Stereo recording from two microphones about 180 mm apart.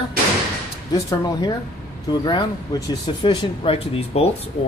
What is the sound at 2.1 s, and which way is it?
Speech, 25° left (ahead or behind).